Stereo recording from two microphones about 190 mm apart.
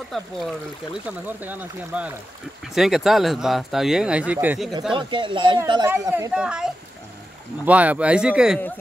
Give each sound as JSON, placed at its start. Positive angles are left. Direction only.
{"t": 0.1, "sound": "speech", "side_deg": 0}
{"t": 1.0, "sound": "speech", "side_deg": -10}
{"t": 4.9, "sound": "speech", "side_deg": -25}
{"t": 6.3, "sound": "speech", "side_deg": -5}